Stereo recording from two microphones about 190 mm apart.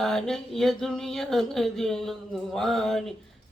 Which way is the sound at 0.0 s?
Centre (ahead or behind).